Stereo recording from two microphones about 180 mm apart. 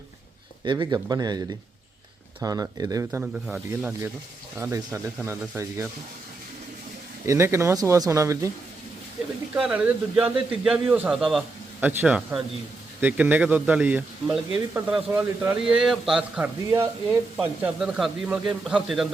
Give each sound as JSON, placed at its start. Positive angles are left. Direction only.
{"t": 0.6, "sound": "speech", "side_deg": -25}
{"t": 2.4, "sound": "speech", "side_deg": -20}
{"t": 7.3, "sound": "speech", "side_deg": -15}
{"t": 9.6, "sound": "a man's voice", "side_deg": -5}